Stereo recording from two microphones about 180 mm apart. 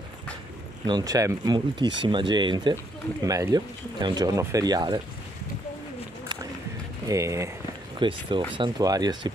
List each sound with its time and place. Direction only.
0.8 s speech: 20° right (ahead or behind)
7.1 s speech: 15° right (ahead or behind)
8.0 s speech: 25° right (ahead or behind)